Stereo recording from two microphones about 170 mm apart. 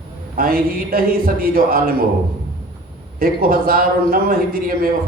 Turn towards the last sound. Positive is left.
turn(degrees=-60)  # may be behind; listen again after turning